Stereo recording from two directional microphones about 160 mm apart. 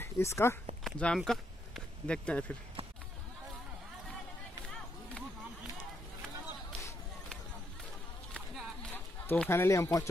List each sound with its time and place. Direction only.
0.0 s speech: 15° left (ahead or behind)
0.8 s speech: 5° left (ahead or behind)
8.3 s a sound: 5° left (ahead or behind)